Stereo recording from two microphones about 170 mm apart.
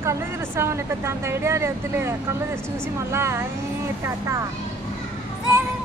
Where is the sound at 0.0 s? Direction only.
15° right (ahead or behind).